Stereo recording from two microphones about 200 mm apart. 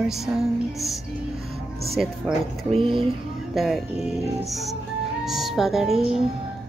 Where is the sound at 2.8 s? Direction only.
25° right (ahead or behind).